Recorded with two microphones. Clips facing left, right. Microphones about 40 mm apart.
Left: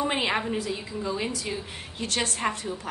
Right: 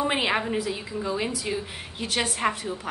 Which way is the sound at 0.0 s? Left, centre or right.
Centre.